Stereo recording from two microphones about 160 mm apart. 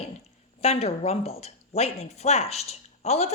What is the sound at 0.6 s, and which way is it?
Speech, 40° left (ahead or behind).